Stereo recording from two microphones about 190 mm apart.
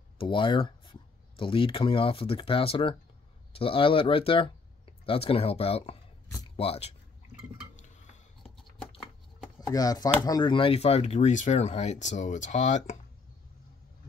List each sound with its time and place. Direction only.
0.2 s speech: 25° left (ahead or behind)
9.7 s speech: 20° left (ahead or behind); by 12.9 s 40° left (ahead or behind)